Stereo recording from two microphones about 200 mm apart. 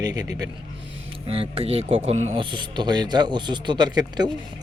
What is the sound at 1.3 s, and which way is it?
Speech, 30° right (ahead or behind).